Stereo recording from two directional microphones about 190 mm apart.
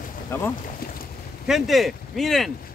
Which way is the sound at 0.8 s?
50° left (ahead or behind).